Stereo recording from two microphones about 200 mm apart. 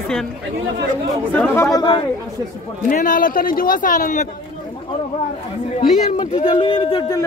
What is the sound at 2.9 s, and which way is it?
A man's voice, 40° left (ahead or behind).